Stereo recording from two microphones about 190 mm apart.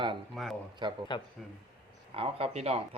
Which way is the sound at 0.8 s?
25° right (ahead or behind).